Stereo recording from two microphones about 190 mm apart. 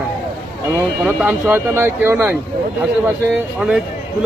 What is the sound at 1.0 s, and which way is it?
Speech, 10° right (ahead or behind).